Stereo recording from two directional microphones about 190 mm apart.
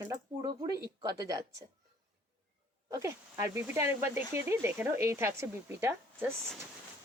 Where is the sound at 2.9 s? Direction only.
15° right (ahead or behind).